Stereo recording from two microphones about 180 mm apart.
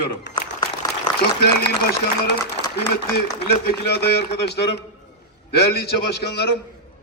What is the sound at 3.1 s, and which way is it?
A man's voice, 65° left (ahead or behind).